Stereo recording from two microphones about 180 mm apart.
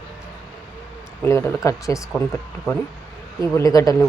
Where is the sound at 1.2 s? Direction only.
15° left (ahead or behind).